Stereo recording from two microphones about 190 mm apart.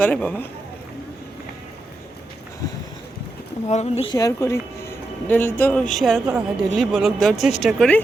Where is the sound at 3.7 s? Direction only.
35° left (ahead or behind).